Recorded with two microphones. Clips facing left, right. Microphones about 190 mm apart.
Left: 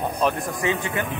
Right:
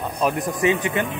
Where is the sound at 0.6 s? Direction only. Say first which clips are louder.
Right 4 dB; 20° right (ahead or behind).